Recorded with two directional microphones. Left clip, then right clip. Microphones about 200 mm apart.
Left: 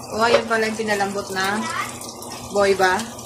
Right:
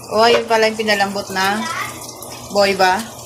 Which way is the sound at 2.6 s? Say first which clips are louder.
Right 3 dB; 25° right (ahead or behind).